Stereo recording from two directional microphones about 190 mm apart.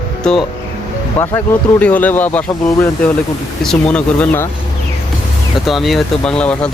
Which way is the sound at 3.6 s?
5° left (ahead or behind).